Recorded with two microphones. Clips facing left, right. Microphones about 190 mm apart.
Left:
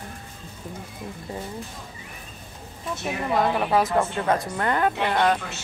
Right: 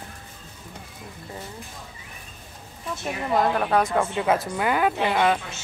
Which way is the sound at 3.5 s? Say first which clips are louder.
Even; 5° left (ahead or behind).